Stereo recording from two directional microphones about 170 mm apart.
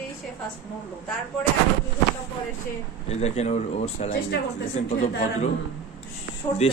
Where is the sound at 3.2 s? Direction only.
40° left (ahead or behind).